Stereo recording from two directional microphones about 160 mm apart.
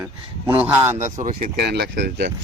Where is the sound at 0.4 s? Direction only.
10° right (ahead or behind).